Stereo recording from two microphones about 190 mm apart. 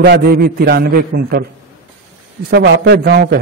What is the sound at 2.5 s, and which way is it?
Speech, 60° right (ahead or behind).